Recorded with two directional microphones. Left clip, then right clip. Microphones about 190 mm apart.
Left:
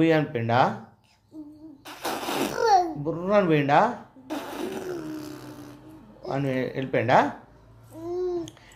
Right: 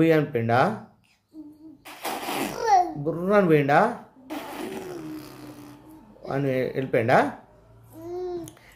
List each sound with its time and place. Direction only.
0.0 s speech: 40° right (ahead or behind)
1.9 s a sound: centre (ahead or behind)
3.1 s speech: 40° right (ahead or behind)
4.3 s a sound: centre (ahead or behind)
6.2 s speech: 40° right (ahead or behind)
8.0 s babbling: 5° left (ahead or behind)